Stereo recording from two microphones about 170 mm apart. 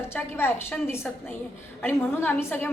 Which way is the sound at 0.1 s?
15° left (ahead or behind).